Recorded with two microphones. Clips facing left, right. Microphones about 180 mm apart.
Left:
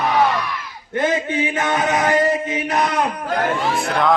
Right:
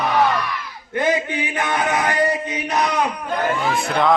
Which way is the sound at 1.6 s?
20° left (ahead or behind).